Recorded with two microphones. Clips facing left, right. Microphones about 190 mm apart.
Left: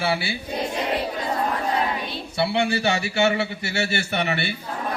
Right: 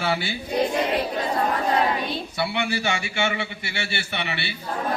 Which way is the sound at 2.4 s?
30° left (ahead or behind).